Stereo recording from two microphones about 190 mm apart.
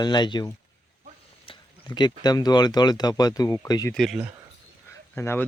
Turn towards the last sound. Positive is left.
turn(degrees=10)  # may be behind; listen again after turning